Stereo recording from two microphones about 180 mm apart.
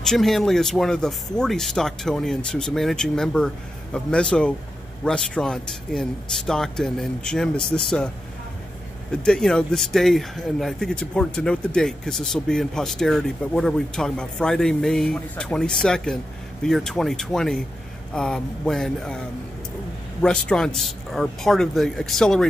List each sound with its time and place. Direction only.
0.0 s speech: centre (ahead or behind)
9.1 s speech: 5° left (ahead or behind)